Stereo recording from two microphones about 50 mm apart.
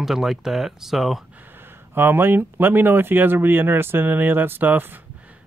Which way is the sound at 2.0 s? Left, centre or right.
Right.